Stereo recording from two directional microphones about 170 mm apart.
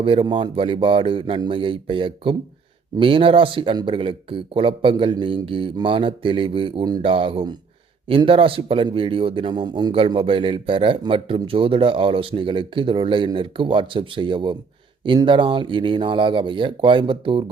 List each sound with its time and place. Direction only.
0.0 s speech: 30° right (ahead or behind)